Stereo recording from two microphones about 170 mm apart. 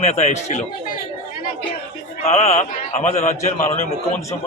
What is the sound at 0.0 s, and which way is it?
Speech, 40° left (ahead or behind).